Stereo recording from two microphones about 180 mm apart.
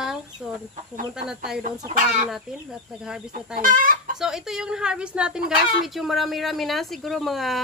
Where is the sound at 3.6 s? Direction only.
50° right (ahead or behind).